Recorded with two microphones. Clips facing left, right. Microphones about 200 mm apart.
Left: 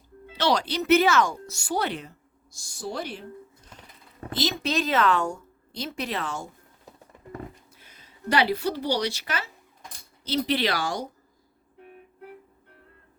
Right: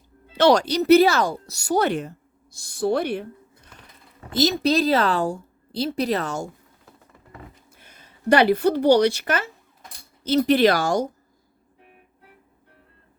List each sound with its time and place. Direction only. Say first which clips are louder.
0.3 s speech: right 8 dB; 50° right (ahead or behind)
4.3 s a woman's voice: right 8 dB; 40° right (ahead or behind)
7.9 s speech: right 10 dB; 50° right (ahead or behind)